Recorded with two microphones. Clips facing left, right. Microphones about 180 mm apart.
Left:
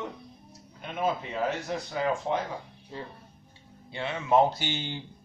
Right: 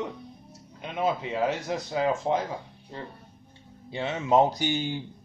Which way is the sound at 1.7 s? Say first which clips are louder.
Right 3 dB; 20° right (ahead or behind).